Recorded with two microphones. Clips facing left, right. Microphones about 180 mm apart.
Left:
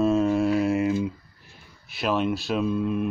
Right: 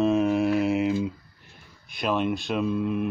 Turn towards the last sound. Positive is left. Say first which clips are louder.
# left 1 dB
turn(degrees=-5)  # may be behind; listen again after turning